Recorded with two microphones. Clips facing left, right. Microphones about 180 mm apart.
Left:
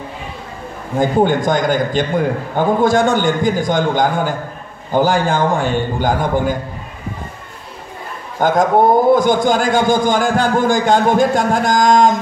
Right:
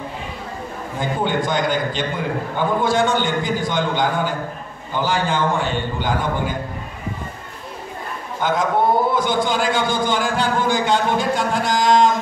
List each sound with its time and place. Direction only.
0.9 s a man's voice: 45° left (ahead or behind)
8.4 s a man's voice: 45° left (ahead or behind)